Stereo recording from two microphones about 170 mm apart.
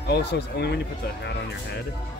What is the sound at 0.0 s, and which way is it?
Speech, 75° left (ahead or behind).